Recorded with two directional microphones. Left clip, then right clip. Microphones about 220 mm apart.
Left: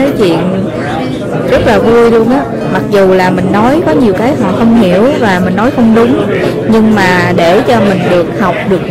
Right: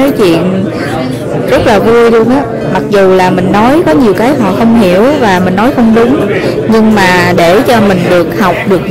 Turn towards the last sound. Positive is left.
turn(degrees=-20)  # may be behind; listen again after turning